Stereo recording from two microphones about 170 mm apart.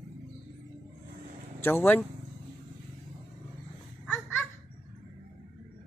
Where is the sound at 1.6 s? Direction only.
15° left (ahead or behind).